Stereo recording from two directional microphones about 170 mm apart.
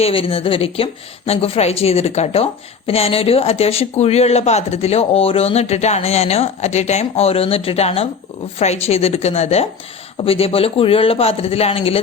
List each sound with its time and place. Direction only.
0.0 s a woman's voice: 35° left (ahead or behind)